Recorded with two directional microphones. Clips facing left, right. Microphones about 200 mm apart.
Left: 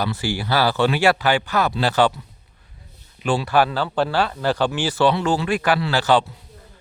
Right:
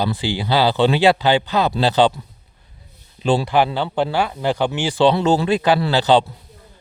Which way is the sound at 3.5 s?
20° right (ahead or behind).